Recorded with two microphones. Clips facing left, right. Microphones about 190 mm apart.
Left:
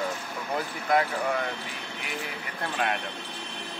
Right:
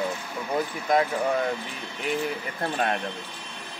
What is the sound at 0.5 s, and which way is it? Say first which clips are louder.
Speech: right 2 dB; 20° right (ahead or behind).